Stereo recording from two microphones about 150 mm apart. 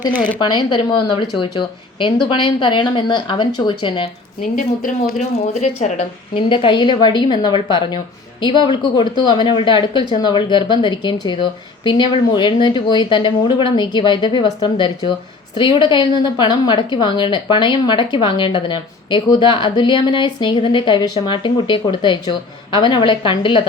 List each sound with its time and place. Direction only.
0.3 s a woman's voice: 30° left (ahead or behind)
4.5 s a woman's voice: 65° left (ahead or behind)
5.5 s speech: 50° left (ahead or behind)
6.3 s a woman's voice: 35° left (ahead or behind)